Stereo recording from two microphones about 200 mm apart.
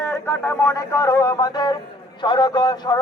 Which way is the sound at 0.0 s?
10° left (ahead or behind).